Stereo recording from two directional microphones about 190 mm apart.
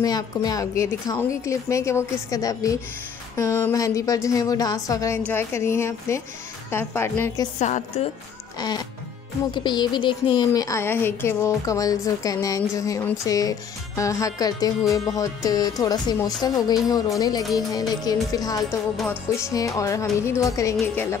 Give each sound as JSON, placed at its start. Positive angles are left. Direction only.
{"t": 0.0, "sound": "a woman's voice", "side_deg": 20}
{"t": 7.6, "sound": "a woman's voice", "side_deg": 40}
{"t": 8.5, "sound": "a woman's voice", "side_deg": 20}